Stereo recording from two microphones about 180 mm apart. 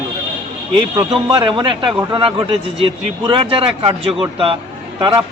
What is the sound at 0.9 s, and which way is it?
Speech, 25° right (ahead or behind).